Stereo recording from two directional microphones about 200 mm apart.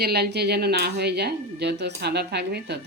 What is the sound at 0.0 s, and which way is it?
A woman's voice, 55° right (ahead or behind).